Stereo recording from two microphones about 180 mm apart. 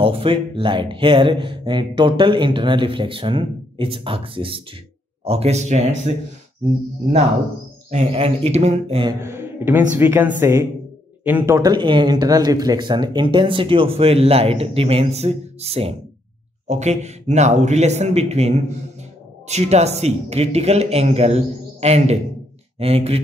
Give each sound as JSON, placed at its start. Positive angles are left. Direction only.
{"t": 0.0, "sound": "speech", "side_deg": -30}
{"t": 7.9, "sound": "speech", "side_deg": -35}
{"t": 9.2, "sound": "a man's voice", "side_deg": -10}